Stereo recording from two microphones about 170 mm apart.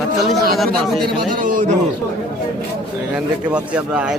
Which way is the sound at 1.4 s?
50° right (ahead or behind).